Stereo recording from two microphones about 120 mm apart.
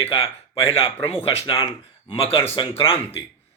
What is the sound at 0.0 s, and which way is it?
Speech, 55° left (ahead or behind).